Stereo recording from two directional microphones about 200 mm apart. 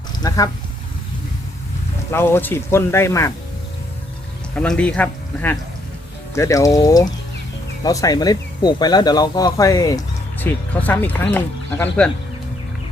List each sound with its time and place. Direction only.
0.2 s speech: 20° left (ahead or behind)
2.0 s speech: 10° left (ahead or behind)
4.5 s speech: 5° left (ahead or behind)